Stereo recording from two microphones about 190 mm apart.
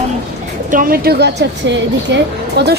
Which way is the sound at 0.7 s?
50° right (ahead or behind).